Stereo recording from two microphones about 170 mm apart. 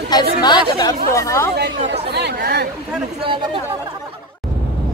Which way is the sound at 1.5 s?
80° right.